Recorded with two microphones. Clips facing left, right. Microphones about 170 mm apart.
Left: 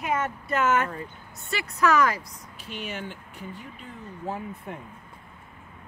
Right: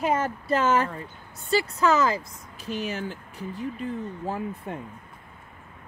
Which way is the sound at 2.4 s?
40° right (ahead or behind).